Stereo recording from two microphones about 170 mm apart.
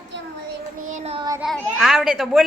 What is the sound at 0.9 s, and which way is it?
Child singing, 40° right (ahead or behind).